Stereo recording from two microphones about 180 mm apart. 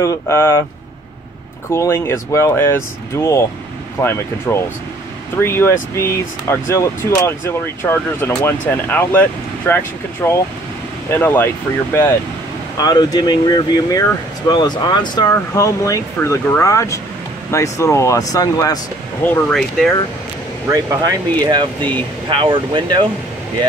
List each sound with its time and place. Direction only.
0.0 s speech: 15° left (ahead or behind)
1.7 s speech: 15° left (ahead or behind)
19.2 s speech: 5° left (ahead or behind)
20.6 s speech: 20° right (ahead or behind)